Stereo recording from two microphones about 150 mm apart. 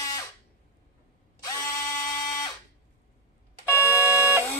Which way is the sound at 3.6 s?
10° right (ahead or behind).